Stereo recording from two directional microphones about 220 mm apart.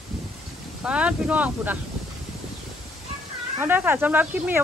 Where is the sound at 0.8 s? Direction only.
5° right (ahead or behind).